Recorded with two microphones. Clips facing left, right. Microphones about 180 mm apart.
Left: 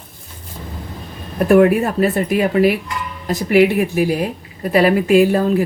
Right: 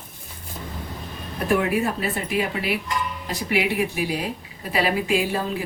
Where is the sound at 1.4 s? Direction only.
55° left (ahead or behind).